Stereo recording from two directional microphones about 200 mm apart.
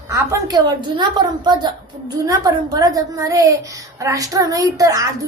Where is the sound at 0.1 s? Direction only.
15° right (ahead or behind).